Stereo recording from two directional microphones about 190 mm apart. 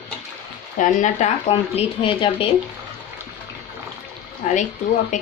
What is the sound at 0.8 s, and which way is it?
Speech, 40° left (ahead or behind).